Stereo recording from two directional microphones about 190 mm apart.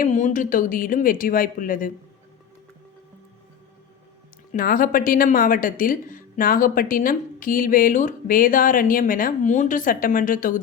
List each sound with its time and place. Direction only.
0.0 s a woman's voice: 40° left (ahead or behind)
4.5 s a woman's voice: 45° left (ahead or behind)